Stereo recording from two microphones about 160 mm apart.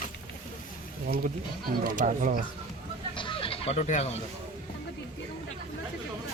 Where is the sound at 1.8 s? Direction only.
55° right (ahead or behind).